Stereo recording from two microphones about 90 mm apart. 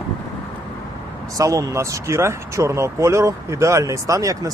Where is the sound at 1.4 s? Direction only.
40° right (ahead or behind).